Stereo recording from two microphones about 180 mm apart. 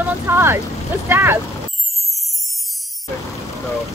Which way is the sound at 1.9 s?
Centre (ahead or behind).